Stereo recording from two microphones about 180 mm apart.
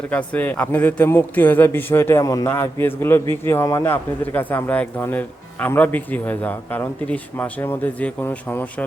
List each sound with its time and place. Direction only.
0.1 s speech: 10° left (ahead or behind)